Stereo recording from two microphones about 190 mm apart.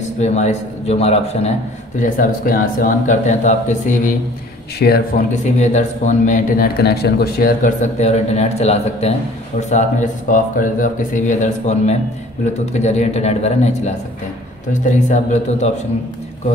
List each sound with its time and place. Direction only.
0.2 s speech: 35° left (ahead or behind)
2.0 s speech: 45° left (ahead or behind)
4.7 s speech: 55° left (ahead or behind); by 15.7 s 35° left (ahead or behind)